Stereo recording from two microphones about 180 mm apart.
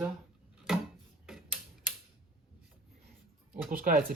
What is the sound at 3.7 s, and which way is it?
Speech, 50° right (ahead or behind).